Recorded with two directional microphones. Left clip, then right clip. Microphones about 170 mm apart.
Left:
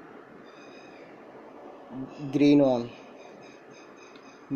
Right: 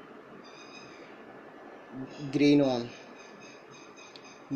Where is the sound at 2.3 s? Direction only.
20° right (ahead or behind).